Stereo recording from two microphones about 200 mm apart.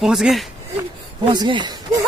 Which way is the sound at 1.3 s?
25° right (ahead or behind).